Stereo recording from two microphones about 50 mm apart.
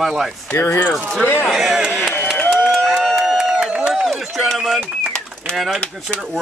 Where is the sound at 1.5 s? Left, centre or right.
Centre.